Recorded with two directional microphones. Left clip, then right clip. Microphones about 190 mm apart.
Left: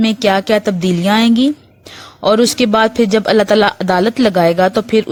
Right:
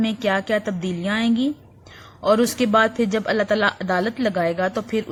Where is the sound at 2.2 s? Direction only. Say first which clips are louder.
Left 7 dB; 35° left (ahead or behind).